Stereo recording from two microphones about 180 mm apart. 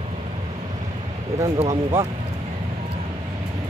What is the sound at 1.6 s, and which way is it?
Speech, 35° right (ahead or behind).